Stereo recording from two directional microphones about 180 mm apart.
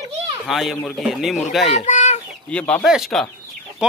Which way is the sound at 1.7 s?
40° left (ahead or behind).